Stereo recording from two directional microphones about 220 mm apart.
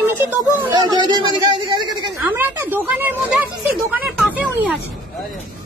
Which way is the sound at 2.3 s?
10° right (ahead or behind).